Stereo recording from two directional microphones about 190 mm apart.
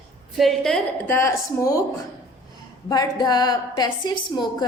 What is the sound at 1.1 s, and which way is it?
Speech, 15° left (ahead or behind).